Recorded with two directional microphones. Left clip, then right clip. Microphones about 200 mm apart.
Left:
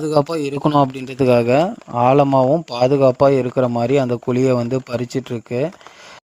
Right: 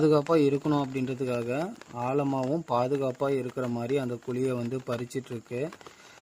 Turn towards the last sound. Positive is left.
turn(degrees=40)  # may be behind; listen again after turning